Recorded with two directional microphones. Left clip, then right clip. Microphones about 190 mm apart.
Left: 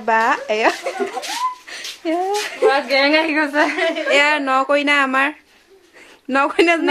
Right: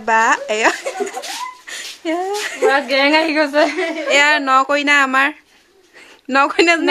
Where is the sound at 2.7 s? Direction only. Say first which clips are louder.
Right 2 dB; 55° right (ahead or behind).